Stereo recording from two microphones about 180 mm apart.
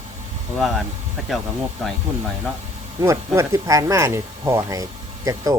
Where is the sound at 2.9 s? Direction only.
15° right (ahead or behind).